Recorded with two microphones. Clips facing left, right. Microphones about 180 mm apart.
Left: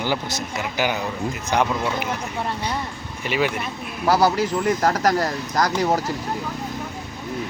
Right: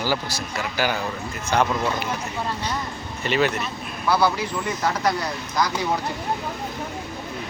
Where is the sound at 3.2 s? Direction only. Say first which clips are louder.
Right 1 dB; 10° left (ahead or behind).